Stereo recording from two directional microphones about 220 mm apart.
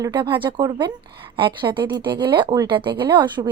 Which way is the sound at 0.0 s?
20° right (ahead or behind).